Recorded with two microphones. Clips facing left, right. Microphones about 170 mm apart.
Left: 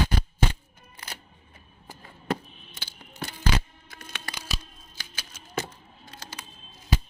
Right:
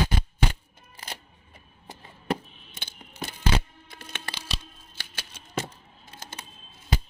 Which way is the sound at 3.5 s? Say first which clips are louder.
Right 2 dB; 25° right (ahead or behind).